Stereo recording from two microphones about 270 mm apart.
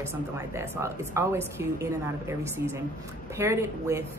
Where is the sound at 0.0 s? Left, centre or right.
Centre.